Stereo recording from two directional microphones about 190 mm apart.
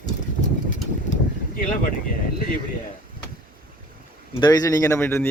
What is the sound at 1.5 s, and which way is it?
Speech, 45° left (ahead or behind).